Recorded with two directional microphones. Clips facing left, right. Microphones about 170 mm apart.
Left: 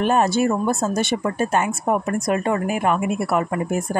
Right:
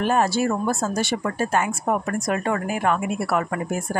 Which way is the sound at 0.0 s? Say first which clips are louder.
Left 2 dB; 20° left (ahead or behind).